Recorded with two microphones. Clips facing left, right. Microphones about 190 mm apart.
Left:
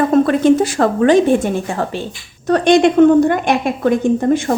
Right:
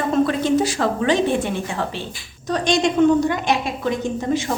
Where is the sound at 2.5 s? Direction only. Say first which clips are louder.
Left 8 dB; 60° left (ahead or behind).